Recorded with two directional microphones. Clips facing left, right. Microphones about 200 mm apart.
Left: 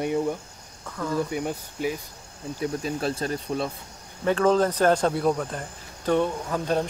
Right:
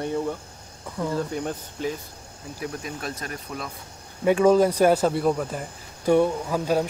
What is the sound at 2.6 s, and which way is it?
Speech, 30° left (ahead or behind).